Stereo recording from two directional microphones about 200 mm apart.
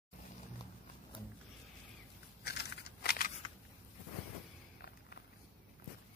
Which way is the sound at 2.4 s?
55° left (ahead or behind).